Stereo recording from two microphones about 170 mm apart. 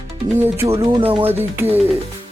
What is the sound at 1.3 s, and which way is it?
Speech, 15° right (ahead or behind).